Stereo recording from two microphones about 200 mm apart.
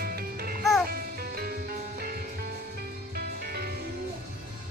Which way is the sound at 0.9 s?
50° right (ahead or behind).